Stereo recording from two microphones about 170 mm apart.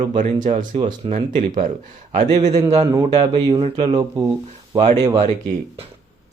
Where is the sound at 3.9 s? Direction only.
20° right (ahead or behind).